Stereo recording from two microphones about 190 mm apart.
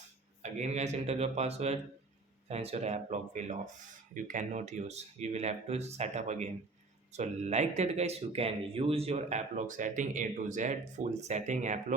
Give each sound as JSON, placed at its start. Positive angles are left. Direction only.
{"t": 0.4, "sound": "speech", "side_deg": -40}